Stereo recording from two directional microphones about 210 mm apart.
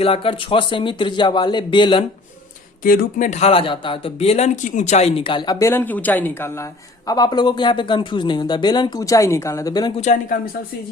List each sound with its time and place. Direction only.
0.0 s speech: 25° left (ahead or behind)
2.8 s speech: 45° left (ahead or behind); by 9.9 s 15° left (ahead or behind)
10.0 s speech: 40° left (ahead or behind)